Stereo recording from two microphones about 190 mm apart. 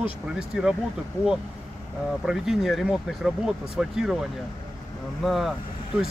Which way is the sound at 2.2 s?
Centre (ahead or behind).